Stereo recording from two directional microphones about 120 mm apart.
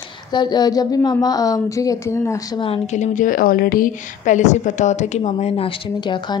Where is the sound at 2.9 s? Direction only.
80° left.